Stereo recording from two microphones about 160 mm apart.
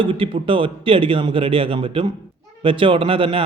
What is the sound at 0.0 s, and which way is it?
Speech, 35° right (ahead or behind).